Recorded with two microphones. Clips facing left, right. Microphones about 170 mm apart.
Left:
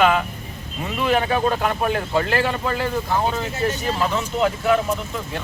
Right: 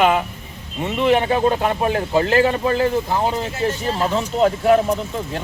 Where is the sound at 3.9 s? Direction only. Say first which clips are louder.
Right 3 dB; 35° right (ahead or behind).